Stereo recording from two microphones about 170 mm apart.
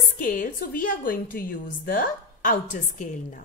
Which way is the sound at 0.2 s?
55° left (ahead or behind).